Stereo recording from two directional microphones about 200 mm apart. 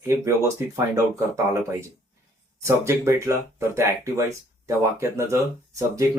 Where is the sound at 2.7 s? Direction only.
15° right (ahead or behind).